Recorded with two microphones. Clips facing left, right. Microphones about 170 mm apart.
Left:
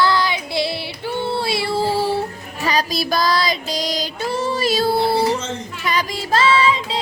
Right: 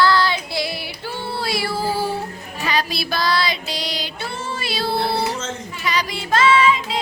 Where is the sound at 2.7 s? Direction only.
40° left (ahead or behind).